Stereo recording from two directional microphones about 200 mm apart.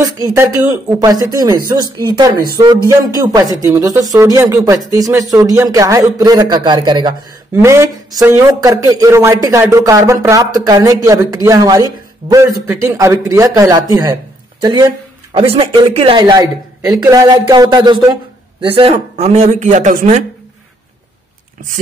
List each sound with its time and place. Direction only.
0.0 s speech: 15° right (ahead or behind); by 20.2 s 35° right (ahead or behind)